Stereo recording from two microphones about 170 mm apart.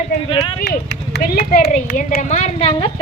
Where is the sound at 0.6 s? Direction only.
80° left.